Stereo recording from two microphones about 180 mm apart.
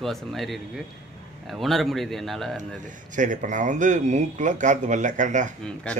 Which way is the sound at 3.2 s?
45° right (ahead or behind).